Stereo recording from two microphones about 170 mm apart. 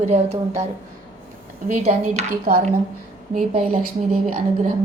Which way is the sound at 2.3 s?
55° right (ahead or behind).